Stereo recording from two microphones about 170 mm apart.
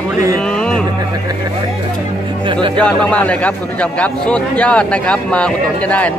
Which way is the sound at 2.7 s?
5° left (ahead or behind).